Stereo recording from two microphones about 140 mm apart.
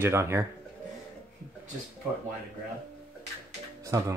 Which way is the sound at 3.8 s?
25° right (ahead or behind).